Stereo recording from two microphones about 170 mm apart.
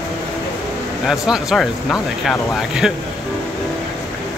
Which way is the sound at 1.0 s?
Centre (ahead or behind).